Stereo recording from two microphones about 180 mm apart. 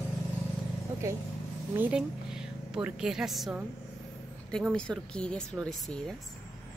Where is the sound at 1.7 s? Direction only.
5° right (ahead or behind).